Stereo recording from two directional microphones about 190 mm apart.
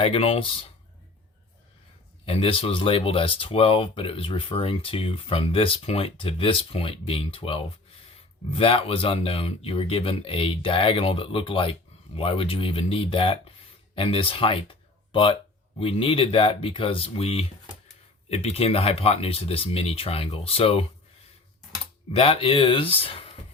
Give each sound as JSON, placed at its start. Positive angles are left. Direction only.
{"t": 0.0, "sound": "speech", "side_deg": 30}
{"t": 2.2, "sound": "speech", "side_deg": 30}
{"t": 22.1, "sound": "speech", "side_deg": 30}